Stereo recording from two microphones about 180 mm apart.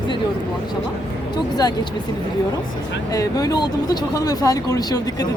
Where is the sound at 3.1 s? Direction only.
20° left (ahead or behind).